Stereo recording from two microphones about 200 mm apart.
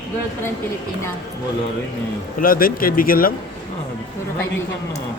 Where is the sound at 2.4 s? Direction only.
45° left (ahead or behind).